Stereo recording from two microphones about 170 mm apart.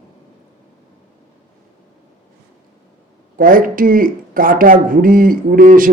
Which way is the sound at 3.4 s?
55° right (ahead or behind).